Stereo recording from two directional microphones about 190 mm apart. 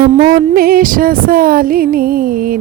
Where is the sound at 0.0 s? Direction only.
50° right (ahead or behind).